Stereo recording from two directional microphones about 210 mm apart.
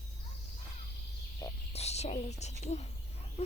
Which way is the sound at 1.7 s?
30° left (ahead or behind).